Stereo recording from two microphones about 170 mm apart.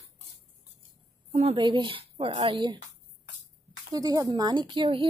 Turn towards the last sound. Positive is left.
turn(degrees=-30)  # may be behind; listen again after turning